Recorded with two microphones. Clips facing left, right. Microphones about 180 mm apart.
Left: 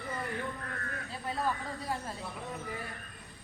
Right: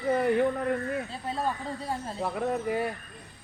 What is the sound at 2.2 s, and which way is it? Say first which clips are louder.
Speech: right 12 dB; 70° right (ahead or behind).